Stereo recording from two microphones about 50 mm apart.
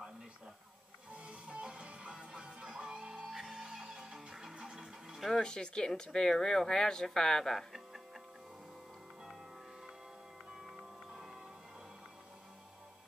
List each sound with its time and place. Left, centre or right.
1.1 s music: right
5.4 s speech: centre
10.5 s music: centre